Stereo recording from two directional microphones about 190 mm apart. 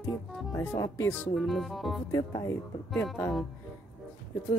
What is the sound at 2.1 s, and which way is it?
Speech, 20° left (ahead or behind).